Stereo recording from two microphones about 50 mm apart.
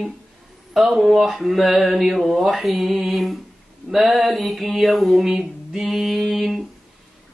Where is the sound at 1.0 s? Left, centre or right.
Centre.